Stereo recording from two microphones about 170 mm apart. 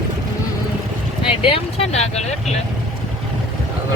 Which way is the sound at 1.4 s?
35° left (ahead or behind).